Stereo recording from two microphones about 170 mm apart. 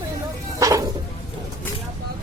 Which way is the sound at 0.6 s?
20° right (ahead or behind).